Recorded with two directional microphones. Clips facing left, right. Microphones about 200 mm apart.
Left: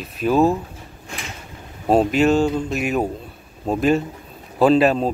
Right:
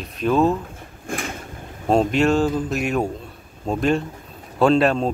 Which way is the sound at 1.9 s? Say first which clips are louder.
Left 2 dB; 5° left (ahead or behind).